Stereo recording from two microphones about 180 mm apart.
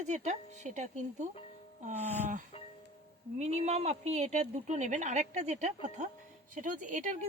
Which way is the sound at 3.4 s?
40° right (ahead or behind).